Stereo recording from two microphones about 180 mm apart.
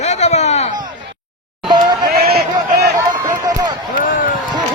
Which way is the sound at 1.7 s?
20° right (ahead or behind).